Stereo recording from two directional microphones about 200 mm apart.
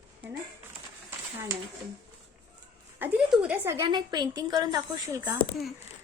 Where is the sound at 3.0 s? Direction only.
5° right (ahead or behind).